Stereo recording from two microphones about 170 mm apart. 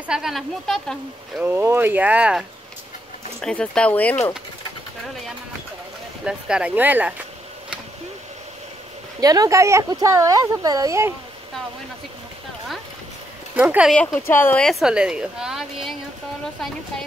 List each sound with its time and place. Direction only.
0.0 s a woman's voice: 5° right (ahead or behind)
1.4 s speech: 10° right (ahead or behind)
3.3 s speech: 5° left (ahead or behind)
6.2 s speech: 5° right (ahead or behind)
9.2 s speech: 20° right (ahead or behind)
13.6 s speech: 5° right (ahead or behind)
13.9 s a woman's voice: 10° left (ahead or behind)